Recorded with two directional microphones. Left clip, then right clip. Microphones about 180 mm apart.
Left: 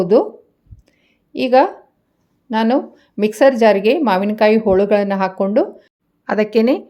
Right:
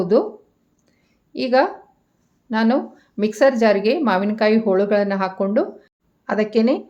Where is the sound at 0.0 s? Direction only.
25° left (ahead or behind).